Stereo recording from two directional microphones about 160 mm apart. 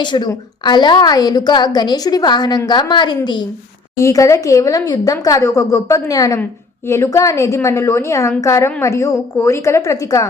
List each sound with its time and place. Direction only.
0.0 s a woman's voice: 30° left (ahead or behind)